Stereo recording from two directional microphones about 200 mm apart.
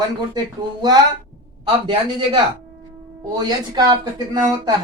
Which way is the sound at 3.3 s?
20° right (ahead or behind).